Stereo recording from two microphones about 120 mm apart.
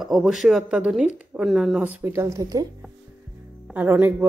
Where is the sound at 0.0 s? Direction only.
Centre (ahead or behind).